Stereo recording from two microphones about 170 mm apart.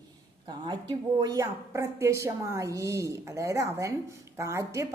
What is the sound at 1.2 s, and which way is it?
A woman's voice, 20° right (ahead or behind).